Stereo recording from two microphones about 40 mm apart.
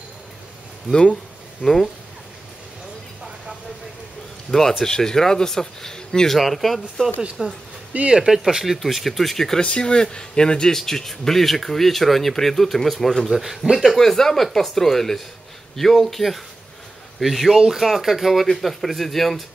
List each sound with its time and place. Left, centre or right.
1.6 s speech: centre
4.5 s speech: centre
6.3 s speech: centre
7.4 s speech: right
8.7 s speech: centre
9.6 s speech: left
10.8 s speech: centre
13.4 s speech: centre
13.9 s speech: centre